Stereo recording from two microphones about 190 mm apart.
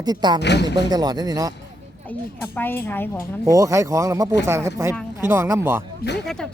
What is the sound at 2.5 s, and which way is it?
Speech, 10° left (ahead or behind).